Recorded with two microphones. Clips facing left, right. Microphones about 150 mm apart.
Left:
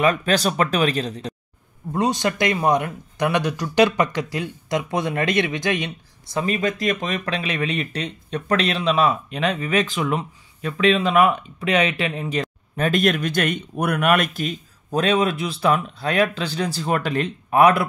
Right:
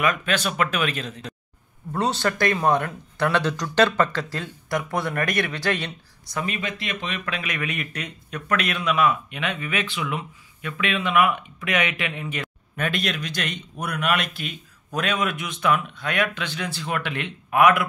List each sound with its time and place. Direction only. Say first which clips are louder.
0.0 s speech: left 5 dB; 35° left (ahead or behind)
1.9 s speech: left 3 dB; 15° left (ahead or behind)
6.3 s speech: left 6 dB; 35° left (ahead or behind)
13.0 s speech: left 8 dB; 50° left (ahead or behind); by 17.8 s 35° left (ahead or behind)